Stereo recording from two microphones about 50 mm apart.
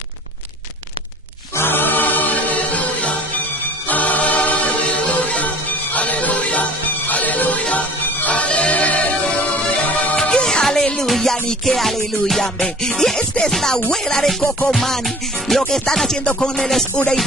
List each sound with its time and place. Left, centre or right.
1.6 s choir: left
2.6 s music: left
3.8 s choir: left
5.9 s music: left
9.8 s music: left
10.1 s music: centre
16.3 s music: centre
16.5 s music: centre